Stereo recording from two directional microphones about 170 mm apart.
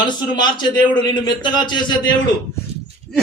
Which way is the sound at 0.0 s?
25° left (ahead or behind).